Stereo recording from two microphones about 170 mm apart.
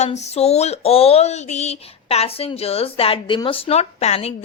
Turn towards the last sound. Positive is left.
turn(degrees=35)  # may be behind; listen again after turning